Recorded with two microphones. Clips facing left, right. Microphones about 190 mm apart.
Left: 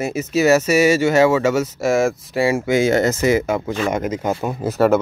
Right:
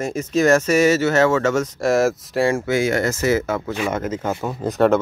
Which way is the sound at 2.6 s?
20° left (ahead or behind).